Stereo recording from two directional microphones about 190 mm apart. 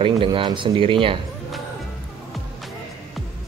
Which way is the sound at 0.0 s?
25° right (ahead or behind).